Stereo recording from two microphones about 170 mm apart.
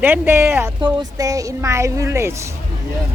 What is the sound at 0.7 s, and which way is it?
Speech, 25° right (ahead or behind).